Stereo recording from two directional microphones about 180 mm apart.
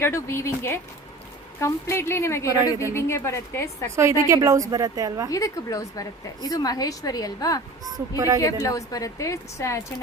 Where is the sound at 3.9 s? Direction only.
15° right (ahead or behind).